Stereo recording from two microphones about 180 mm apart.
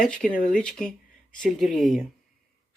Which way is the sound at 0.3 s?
50° left (ahead or behind).